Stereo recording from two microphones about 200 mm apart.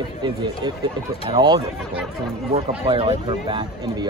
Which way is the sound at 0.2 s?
20° right (ahead or behind).